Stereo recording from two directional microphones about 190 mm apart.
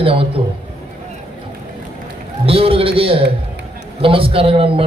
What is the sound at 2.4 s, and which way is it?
A man's voice, 30° right (ahead or behind).